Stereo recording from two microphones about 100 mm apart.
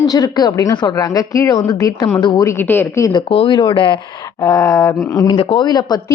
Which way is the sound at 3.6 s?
55° left (ahead or behind).